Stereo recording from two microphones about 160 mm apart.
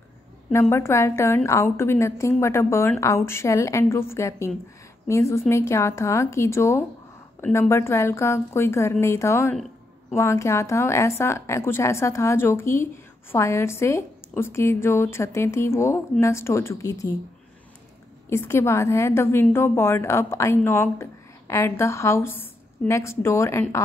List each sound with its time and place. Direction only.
0.5 s a woman's voice: 15° left (ahead or behind)
18.3 s a woman's voice: 15° left (ahead or behind)